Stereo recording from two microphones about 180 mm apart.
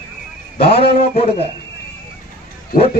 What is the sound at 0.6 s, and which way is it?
Speech, 65° left (ahead or behind).